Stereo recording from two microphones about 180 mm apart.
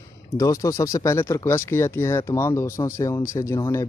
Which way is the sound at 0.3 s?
15° left (ahead or behind).